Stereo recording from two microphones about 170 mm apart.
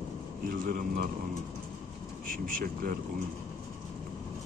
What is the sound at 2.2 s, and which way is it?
Speech, 55° right (ahead or behind).